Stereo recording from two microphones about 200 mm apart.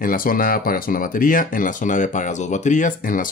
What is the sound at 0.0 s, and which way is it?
Speech, 45° left (ahead or behind).